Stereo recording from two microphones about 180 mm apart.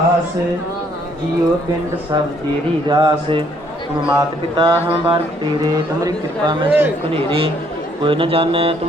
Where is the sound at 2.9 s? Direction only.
25° right (ahead or behind).